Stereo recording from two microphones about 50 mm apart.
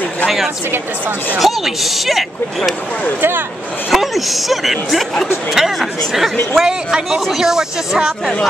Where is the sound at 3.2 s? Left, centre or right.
Right.